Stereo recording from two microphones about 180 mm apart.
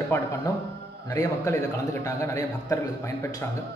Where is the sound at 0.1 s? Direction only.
15° left (ahead or behind).